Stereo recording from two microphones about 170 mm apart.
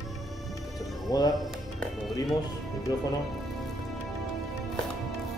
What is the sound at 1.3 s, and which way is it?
Speech, centre (ahead or behind).